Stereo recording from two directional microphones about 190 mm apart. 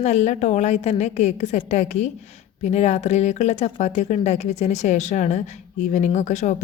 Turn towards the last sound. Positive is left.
turn(degrees=40)  # may be behind; listen again after turning